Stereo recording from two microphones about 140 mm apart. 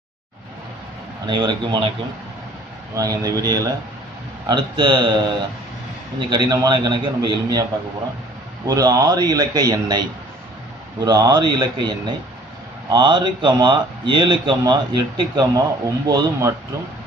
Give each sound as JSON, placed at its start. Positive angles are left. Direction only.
{"t": 1.2, "sound": "a man's voice", "side_deg": -35}
{"t": 3.0, "sound": "a man's voice", "side_deg": -25}
{"t": 6.1, "sound": "a man's voice", "side_deg": -35}
{"t": 8.6, "sound": "speech", "side_deg": -25}
{"t": 11.1, "sound": "a man's voice", "side_deg": -30}
{"t": 12.9, "sound": "a man's voice", "side_deg": -35}